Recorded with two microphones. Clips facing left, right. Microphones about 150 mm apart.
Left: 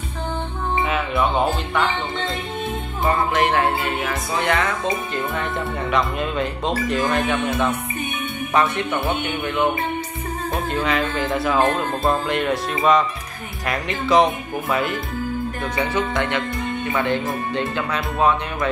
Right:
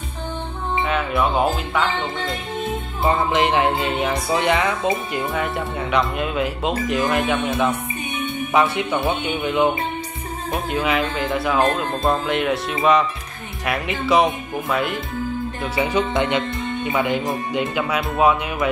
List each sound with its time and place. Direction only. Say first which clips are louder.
0.8 s speech: right 2 dB; centre (ahead or behind)
3.1 s speech: right 1 dB; 20° right (ahead or behind); by 7.7 s centre (ahead or behind)
8.5 s speech: right 1 dB; 10° right (ahead or behind)
10.5 s speech: right 1 dB; 5° right (ahead or behind)
16.0 s speech: right 4 dB; 20° right (ahead or behind)